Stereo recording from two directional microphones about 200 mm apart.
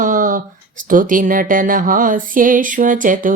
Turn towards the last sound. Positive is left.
turn(degrees=-40)  # may be behind; listen again after turning